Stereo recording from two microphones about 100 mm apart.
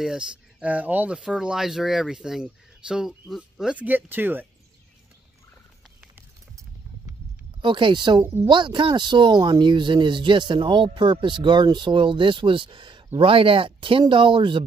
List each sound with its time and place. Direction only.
0.0 s speech: 5° right (ahead or behind)
3.8 s speech: 20° right (ahead or behind)
7.6 s speech: 55° right (ahead or behind)